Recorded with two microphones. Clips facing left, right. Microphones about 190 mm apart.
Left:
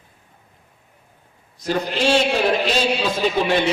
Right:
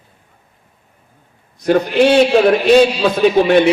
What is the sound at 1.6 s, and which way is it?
A man's voice, 60° right (ahead or behind).